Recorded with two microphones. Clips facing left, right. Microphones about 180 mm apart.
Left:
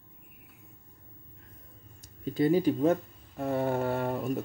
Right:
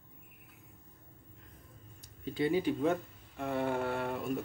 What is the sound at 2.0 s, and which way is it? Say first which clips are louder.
Speech: left 6 dB; 45° left (ahead or behind).